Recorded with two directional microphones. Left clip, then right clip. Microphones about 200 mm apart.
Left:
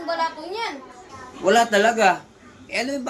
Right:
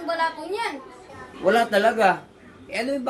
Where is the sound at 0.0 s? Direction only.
10° right (ahead or behind).